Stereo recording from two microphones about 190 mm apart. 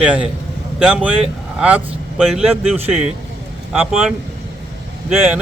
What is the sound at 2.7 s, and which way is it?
Speech, 35° right (ahead or behind).